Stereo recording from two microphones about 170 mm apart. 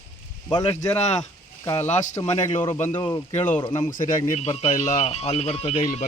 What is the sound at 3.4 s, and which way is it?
Speech, 10° left (ahead or behind).